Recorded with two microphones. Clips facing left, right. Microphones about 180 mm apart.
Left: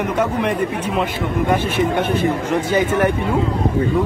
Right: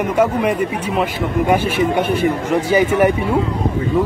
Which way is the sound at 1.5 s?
10° right (ahead or behind).